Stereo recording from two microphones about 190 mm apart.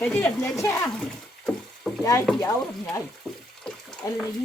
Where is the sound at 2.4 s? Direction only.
15° left (ahead or behind).